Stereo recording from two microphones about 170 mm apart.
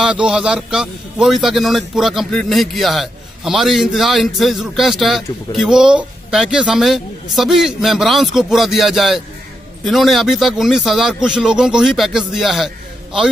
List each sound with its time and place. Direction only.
0.0 s a man's voice: 5° right (ahead or behind)